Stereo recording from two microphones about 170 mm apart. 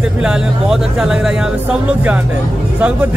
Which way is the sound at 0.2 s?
5° right (ahead or behind).